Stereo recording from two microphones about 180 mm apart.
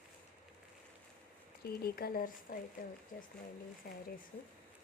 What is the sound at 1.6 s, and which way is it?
Speech, 55° left (ahead or behind).